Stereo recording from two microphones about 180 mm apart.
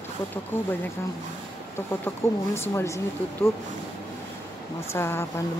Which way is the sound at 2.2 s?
15° left (ahead or behind).